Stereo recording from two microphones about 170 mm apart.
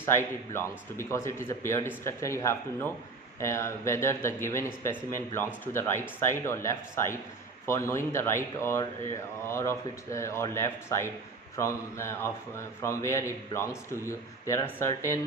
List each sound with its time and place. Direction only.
0.5 s a man's voice: 15° left (ahead or behind)